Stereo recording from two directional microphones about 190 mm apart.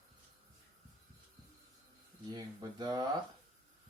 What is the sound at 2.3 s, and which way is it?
Speech, 20° right (ahead or behind).